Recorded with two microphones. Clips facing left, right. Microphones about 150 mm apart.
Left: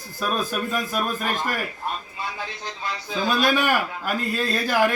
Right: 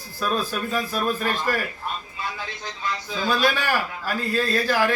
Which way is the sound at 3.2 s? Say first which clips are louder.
Left 2 dB; 15° left (ahead or behind).